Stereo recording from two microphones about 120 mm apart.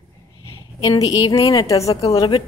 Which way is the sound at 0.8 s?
30° left (ahead or behind).